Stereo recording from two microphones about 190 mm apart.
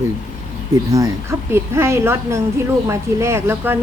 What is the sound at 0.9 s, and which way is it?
A woman's voice, 15° right (ahead or behind).